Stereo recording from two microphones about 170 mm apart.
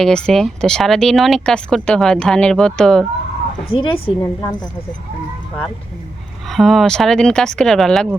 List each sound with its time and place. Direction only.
0.0 s speech: 5° left (ahead or behind)
3.7 s speech: 30° left (ahead or behind)
4.2 s a woman's voice: 20° left (ahead or behind)
6.5 s speech: centre (ahead or behind)